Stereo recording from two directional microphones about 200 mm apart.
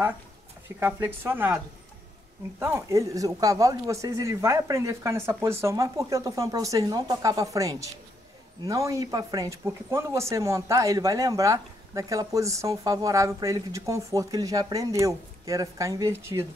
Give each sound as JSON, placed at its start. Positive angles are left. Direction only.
{"t": 0.7, "sound": "speech", "side_deg": -10}
{"t": 2.6, "sound": "speech", "side_deg": -15}